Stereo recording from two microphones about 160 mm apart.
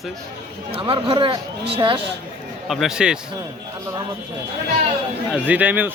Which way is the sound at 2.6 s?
Centre (ahead or behind).